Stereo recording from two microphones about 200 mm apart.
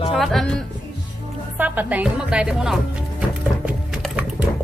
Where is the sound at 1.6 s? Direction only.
10° right (ahead or behind).